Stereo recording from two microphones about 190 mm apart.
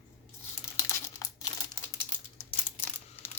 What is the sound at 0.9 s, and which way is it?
Crumpling, 15° left (ahead or behind).